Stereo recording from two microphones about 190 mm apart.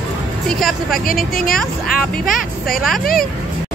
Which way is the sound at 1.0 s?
50° left (ahead or behind).